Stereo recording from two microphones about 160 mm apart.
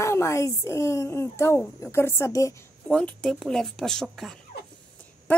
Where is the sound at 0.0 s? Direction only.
15° left (ahead or behind).